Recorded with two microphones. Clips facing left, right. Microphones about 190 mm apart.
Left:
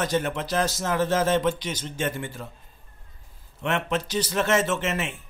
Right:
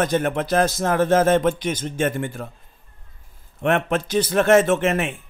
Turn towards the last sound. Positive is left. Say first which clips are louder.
# right 7 dB
turn(degrees=-55)  # may be behind; listen again after turning